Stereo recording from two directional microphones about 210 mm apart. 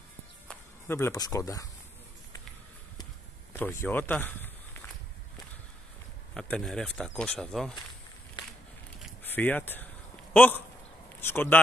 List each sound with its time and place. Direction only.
0.5 s speech: 10° left (ahead or behind)
3.5 s speech: 10° left (ahead or behind)
6.3 s speech: 5° left (ahead or behind)
9.2 s speech: 10° left (ahead or behind)